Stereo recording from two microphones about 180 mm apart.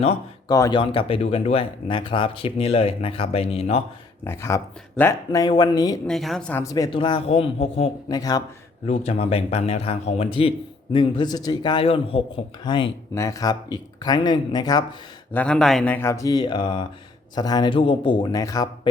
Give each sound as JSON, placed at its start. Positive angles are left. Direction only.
{"t": 0.4, "sound": "speech", "side_deg": 20}
{"t": 4.2, "sound": "speech", "side_deg": 15}
{"t": 6.1, "sound": "a woman's voice", "side_deg": 0}
{"t": 6.6, "sound": "speech", "side_deg": 20}
{"t": 8.2, "sound": "speech", "side_deg": 20}
{"t": 8.9, "sound": "speech", "side_deg": 35}
{"t": 15.3, "sound": "speech", "side_deg": 5}